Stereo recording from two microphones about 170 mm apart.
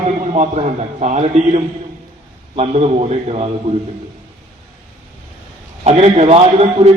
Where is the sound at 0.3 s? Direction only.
40° right (ahead or behind).